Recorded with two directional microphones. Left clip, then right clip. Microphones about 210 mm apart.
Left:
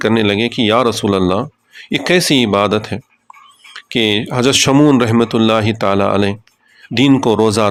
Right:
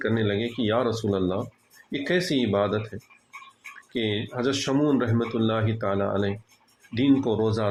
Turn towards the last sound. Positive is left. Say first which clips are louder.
# left 12 dB
turn(degrees=40)  # may be behind; listen again after turning